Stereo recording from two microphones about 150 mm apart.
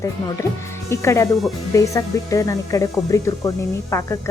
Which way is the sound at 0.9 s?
20° left (ahead or behind).